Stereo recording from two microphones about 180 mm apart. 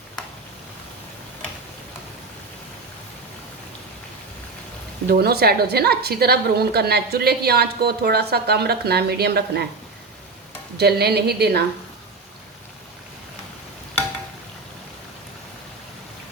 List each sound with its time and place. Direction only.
5.0 s a woman's voice: 60° right (ahead or behind)
10.8 s a woman's voice: 65° right (ahead or behind)